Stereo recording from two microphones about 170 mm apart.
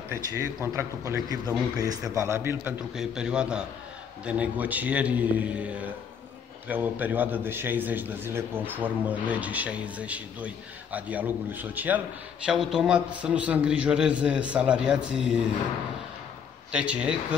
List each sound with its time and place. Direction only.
0.1 s a man's voice: 15° right (ahead or behind)
3.0 s a man's voice: 5° right (ahead or behind)
16.7 s a man's voice: 5° right (ahead or behind)